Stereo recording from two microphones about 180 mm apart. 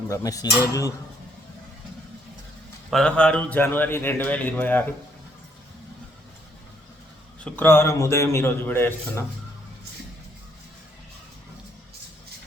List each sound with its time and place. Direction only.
0.1 s cutlery: 20° left (ahead or behind)
2.9 s a man's voice: 5° left (ahead or behind)
7.4 s a man's voice: 10° left (ahead or behind)